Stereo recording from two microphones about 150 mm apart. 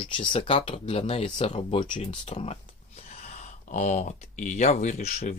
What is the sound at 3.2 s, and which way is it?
Speech, 55° left (ahead or behind).